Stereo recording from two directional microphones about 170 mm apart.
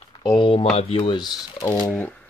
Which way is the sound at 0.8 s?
30° left (ahead or behind).